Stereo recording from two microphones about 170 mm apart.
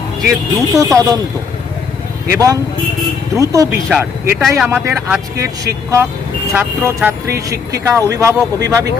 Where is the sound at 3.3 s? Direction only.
20° right (ahead or behind).